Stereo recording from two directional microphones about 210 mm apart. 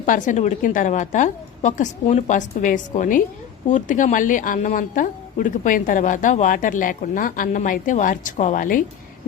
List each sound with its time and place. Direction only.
0.0 s a woman's voice: 40° left (ahead or behind)